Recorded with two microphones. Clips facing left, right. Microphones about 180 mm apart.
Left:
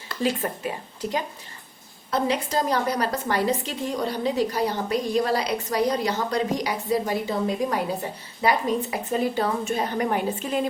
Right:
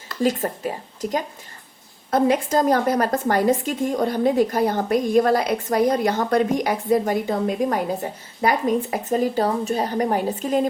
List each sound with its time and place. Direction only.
0.2 s speech: 40° right (ahead or behind)
2.0 s speech: 50° right (ahead or behind)